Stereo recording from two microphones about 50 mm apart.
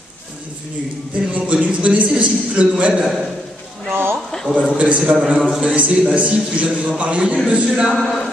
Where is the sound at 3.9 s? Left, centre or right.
Right.